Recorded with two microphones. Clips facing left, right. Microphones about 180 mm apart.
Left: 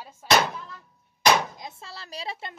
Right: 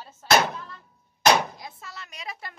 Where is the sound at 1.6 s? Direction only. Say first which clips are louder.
Left 1 dB; 25° left (ahead or behind).